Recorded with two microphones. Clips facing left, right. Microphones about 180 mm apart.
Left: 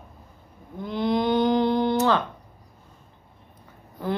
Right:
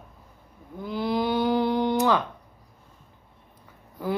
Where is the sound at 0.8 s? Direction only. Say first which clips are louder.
Left 2 dB; 5° right (ahead or behind).